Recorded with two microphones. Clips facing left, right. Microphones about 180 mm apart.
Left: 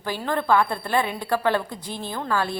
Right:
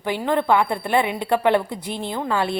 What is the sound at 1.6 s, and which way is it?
Speech, 65° right (ahead or behind).